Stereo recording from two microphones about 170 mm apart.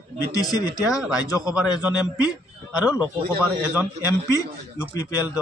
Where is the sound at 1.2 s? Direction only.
20° left (ahead or behind).